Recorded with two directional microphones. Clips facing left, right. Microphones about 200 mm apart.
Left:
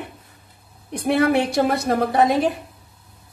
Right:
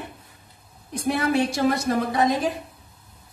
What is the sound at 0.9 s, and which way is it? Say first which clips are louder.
A woman's voice: left 5 dB; 60° left (ahead or behind).